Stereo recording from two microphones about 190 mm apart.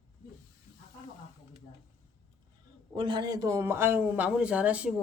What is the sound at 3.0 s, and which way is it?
Speech, 25° right (ahead or behind).